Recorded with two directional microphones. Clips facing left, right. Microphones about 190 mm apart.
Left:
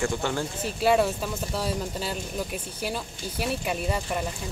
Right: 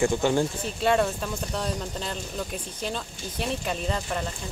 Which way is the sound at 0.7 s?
5° left (ahead or behind).